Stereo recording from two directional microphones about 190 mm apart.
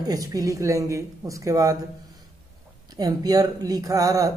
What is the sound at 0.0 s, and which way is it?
Speech, 20° right (ahead or behind).